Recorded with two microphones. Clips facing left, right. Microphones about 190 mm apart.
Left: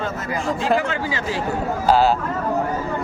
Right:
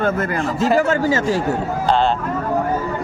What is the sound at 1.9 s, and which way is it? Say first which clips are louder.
Speech: left 1 dB; 5° left (ahead or behind).